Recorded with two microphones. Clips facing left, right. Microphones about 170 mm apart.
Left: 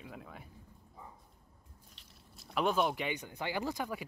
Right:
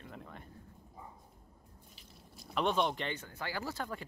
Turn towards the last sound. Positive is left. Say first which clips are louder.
# left 3 dB
turn(degrees=10)  # may be behind; listen again after turning